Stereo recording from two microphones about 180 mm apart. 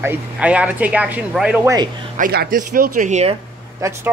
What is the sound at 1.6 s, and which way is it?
Speech, 20° right (ahead or behind).